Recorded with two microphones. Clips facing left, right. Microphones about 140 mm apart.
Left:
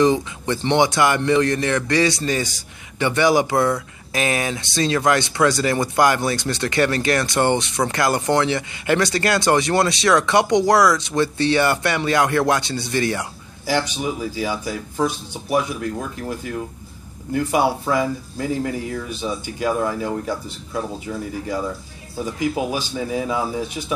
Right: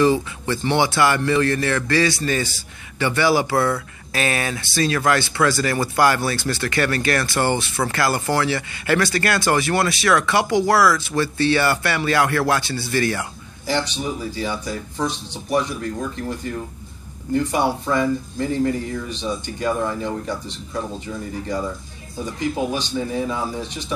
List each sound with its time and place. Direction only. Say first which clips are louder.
0.0 s a man's voice: even; 20° left (ahead or behind)
22.2 s speech: left 1 dB; 5° left (ahead or behind)